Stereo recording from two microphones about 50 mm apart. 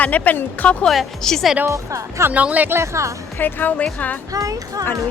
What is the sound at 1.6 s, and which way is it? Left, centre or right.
Speech, right.